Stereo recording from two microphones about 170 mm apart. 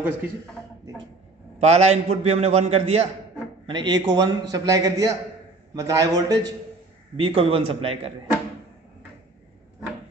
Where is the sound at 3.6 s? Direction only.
25° right (ahead or behind).